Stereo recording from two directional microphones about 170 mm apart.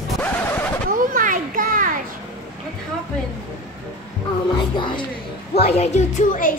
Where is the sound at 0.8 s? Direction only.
55° right (ahead or behind).